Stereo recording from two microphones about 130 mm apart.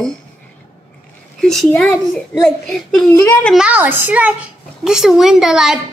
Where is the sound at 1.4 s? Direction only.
5° left (ahead or behind).